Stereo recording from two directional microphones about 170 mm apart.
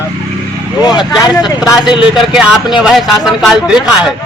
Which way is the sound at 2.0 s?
5° right (ahead or behind).